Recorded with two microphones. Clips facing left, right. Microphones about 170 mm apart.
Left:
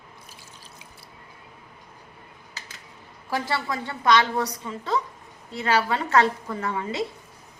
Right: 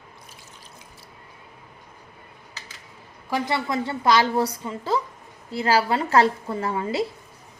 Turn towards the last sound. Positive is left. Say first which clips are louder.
# right 3 dB
turn(degrees=-30)  # may be behind; listen again after turning